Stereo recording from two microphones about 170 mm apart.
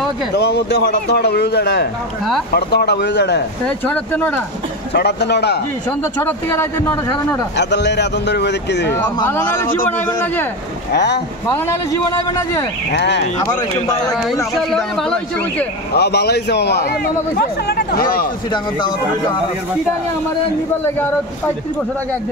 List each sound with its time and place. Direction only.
0.4 s a man's voice: 90° left
3.6 s speech: 10° left (ahead or behind)
4.9 s a man's voice: 75° left (ahead or behind)
6.2 s speech: 10° left (ahead or behind)
7.5 s speech: 90° left
8.9 s speech: 15° left (ahead or behind)
10.9 s speech: 80° left
11.4 s a man's voice: 15° left (ahead or behind)
12.9 s speech: 90° left
14.1 s speech: centre (ahead or behind)
15.9 s a man's voice: 75° left (ahead or behind)
18.5 s a man's voice: 25° left (ahead or behind)